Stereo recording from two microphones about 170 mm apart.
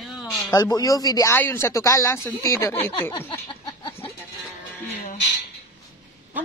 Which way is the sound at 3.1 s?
20° left (ahead or behind).